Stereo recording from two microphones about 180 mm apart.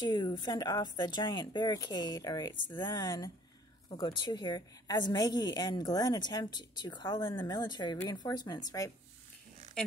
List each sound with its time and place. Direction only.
0.0 s a woman's voice: 25° left (ahead or behind)